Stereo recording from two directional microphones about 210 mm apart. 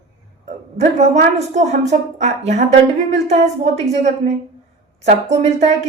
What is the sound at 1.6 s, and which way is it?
A woman's voice, 35° right (ahead or behind).